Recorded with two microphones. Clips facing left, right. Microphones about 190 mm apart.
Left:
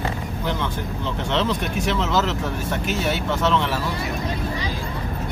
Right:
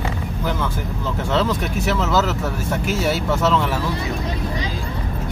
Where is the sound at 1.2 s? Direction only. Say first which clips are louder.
Right 3 dB; 5° right (ahead or behind).